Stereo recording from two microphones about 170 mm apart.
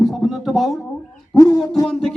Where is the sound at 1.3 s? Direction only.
20° left (ahead or behind).